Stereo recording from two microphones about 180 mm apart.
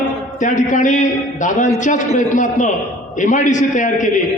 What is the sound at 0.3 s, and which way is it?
A man's voice, 45° left (ahead or behind).